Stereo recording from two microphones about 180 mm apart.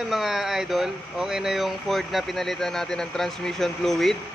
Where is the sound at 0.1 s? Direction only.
Centre (ahead or behind).